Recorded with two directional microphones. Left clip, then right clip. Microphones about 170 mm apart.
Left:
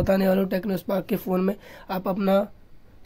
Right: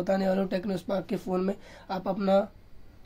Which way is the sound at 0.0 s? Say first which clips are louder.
Left 5 dB; 50° left (ahead or behind).